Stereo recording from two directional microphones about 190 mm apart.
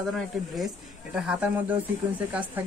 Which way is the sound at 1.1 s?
5° right (ahead or behind).